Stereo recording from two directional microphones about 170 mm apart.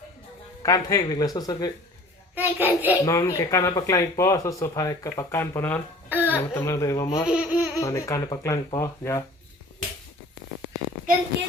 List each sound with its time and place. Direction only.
0.6 s speech: 20° left (ahead or behind)
2.3 s child singing: 10° right (ahead or behind)
3.1 s speech: 20° left (ahead or behind)
6.1 s a sound: 10° right (ahead or behind)
6.3 s speech: 15° left (ahead or behind)
7.3 s laughter: 5° right (ahead or behind)
7.8 s speech: 20° left (ahead or behind)